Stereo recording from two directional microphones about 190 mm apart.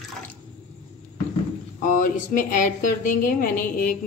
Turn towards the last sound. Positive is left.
turn(degrees=45)  # may be behind; listen again after turning